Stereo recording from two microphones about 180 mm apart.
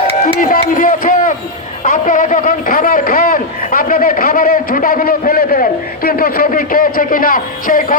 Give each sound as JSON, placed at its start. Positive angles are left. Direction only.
{"t": 0.3, "sound": "a man's voice", "side_deg": 50}